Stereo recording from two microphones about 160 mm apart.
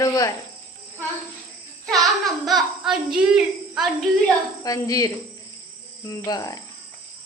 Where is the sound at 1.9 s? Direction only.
Centre (ahead or behind).